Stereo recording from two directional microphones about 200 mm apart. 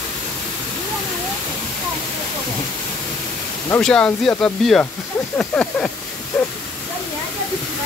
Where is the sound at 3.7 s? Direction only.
5° left (ahead or behind).